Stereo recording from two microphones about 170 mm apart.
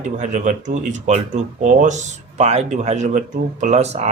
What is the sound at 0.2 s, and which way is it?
Speech, 50° right (ahead or behind).